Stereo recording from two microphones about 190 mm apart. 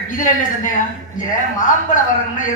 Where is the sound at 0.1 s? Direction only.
45° left (ahead or behind).